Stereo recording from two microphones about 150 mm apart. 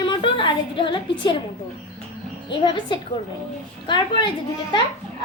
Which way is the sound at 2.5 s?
30° left (ahead or behind).